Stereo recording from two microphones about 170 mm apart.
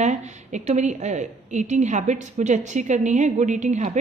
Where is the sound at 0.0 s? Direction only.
45° right (ahead or behind).